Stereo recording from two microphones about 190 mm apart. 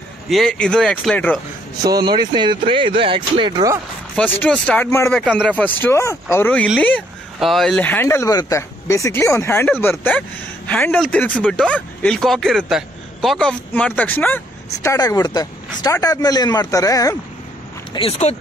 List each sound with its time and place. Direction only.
0.3 s speech: 5° left (ahead or behind)
1.8 s speech: 20° right (ahead or behind)
4.1 s speech: 5° left (ahead or behind)
17.9 s speech: 30° left (ahead or behind)